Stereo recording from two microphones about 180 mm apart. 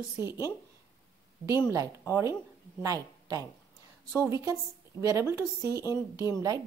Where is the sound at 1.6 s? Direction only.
20° right (ahead or behind).